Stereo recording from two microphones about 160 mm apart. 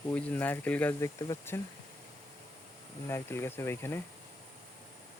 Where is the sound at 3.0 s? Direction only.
15° left (ahead or behind).